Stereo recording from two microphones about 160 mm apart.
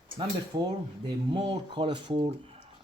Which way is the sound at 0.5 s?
25° right (ahead or behind).